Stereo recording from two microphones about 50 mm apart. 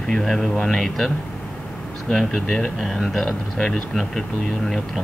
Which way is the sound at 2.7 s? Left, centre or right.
Centre.